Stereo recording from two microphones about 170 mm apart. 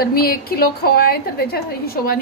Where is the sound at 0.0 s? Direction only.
60° left (ahead or behind).